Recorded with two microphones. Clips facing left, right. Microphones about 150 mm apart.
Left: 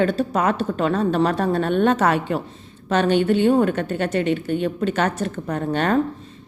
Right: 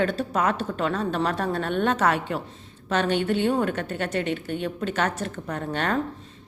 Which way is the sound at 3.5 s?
30° left (ahead or behind).